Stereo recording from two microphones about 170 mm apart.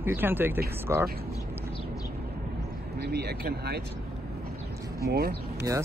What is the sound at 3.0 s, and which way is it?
Speech, 70° right (ahead or behind).